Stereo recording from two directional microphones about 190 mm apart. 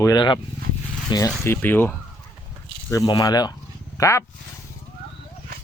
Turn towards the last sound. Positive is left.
turn(degrees=15)  # may be behind; listen again after turning